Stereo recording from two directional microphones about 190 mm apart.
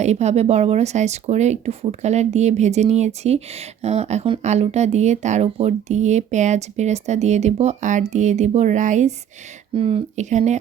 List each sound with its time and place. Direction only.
0.0 s speech: 35° right (ahead or behind)
9.7 s speech: 30° right (ahead or behind)